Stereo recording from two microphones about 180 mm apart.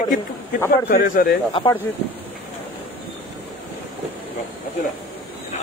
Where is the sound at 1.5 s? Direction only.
30° left (ahead or behind).